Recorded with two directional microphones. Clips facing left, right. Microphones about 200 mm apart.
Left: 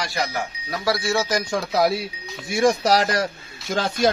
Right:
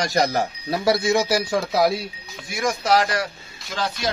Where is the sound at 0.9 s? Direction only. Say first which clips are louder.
Right 3 dB; 20° right (ahead or behind).